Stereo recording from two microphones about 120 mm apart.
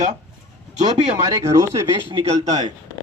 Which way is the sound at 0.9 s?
30° right (ahead or behind).